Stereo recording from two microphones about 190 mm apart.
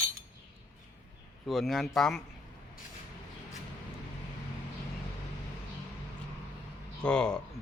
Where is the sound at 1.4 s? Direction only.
Centre (ahead or behind).